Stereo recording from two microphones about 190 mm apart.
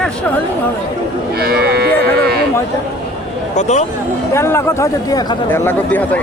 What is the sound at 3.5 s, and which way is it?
Speech, 35° left (ahead or behind).